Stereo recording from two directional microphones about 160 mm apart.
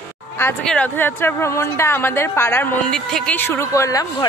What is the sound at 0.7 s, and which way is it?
A woman's voice, 10° left (ahead or behind).